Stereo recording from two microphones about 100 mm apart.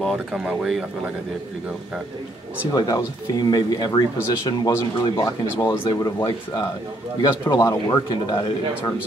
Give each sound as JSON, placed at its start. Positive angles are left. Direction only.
{"t": 0.0, "sound": "speech", "side_deg": 5}
{"t": 0.4, "sound": "speech", "side_deg": -5}
{"t": 2.7, "sound": "speech", "side_deg": 40}
{"t": 8.1, "sound": "speech", "side_deg": 45}